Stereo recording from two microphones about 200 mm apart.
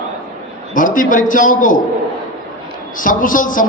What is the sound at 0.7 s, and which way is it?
A man's voice, 40° left (ahead or behind).